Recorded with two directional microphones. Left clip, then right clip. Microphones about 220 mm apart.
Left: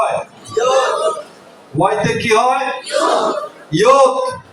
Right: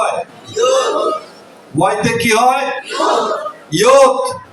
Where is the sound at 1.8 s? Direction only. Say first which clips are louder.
Right 1 dB; 45° right (ahead or behind).